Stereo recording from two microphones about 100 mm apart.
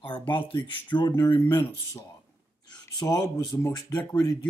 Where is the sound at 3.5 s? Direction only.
25° left (ahead or behind).